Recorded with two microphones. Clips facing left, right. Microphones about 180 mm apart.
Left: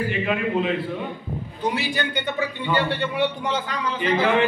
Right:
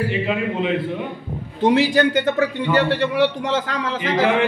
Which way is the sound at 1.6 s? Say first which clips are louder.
Right 10 dB; 90° right.